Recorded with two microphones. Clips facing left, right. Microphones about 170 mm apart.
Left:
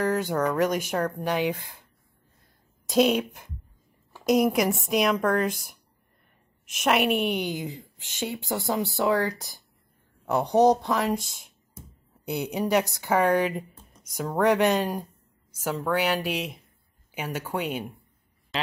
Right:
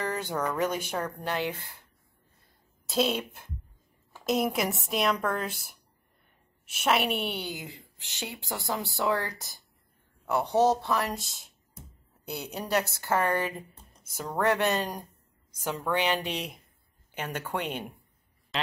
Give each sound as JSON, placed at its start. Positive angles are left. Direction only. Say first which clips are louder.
{"t": 0.0, "sound": "a sound", "louder": "left 6 dB", "side_deg": 10}
{"t": 0.5, "sound": "speech", "louder": "left 5 dB", "side_deg": 10}
{"t": 3.0, "sound": "speech", "louder": "left 6 dB", "side_deg": 10}
{"t": 4.3, "sound": "a woman's voice", "louder": "left 6 dB", "side_deg": 0}
{"t": 6.8, "sound": "a woman's voice", "louder": "left 4 dB", "side_deg": 0}
{"t": 7.3, "sound": "speech", "louder": "left 7 dB", "side_deg": 20}
{"t": 12.3, "sound": "speech", "louder": "left 6 dB", "side_deg": 15}
{"t": 18.5, "sound": "a sound", "louder": "left 2 dB", "side_deg": 0}